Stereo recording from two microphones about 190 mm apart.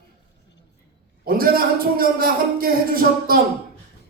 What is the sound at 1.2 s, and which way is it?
A man's voice, 50° right (ahead or behind).